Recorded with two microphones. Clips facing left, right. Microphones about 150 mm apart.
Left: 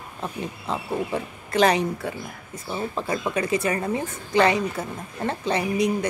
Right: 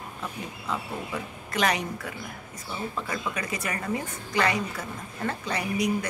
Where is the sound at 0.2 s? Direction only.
30° left (ahead or behind).